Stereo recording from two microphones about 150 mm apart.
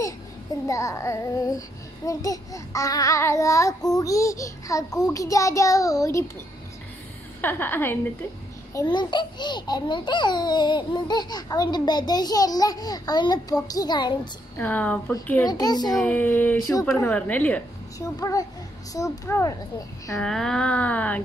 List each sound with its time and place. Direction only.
0.7 s a child's voice: 20° left (ahead or behind)
7.4 s speech: 15° left (ahead or behind)
8.8 s a child's voice: 30° left (ahead or behind)
14.6 s speech: 10° left (ahead or behind)
15.4 s a child's voice: 25° left (ahead or behind)
15.9 s speech: 5° left (ahead or behind)
17.9 s a child's voice: 20° left (ahead or behind)
20.2 s speech: 5° left (ahead or behind)